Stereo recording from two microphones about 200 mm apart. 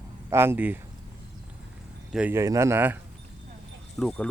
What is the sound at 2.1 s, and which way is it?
Speech, 10° right (ahead or behind).